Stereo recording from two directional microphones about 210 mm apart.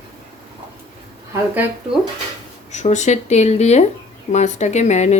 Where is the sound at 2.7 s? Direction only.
35° left (ahead or behind).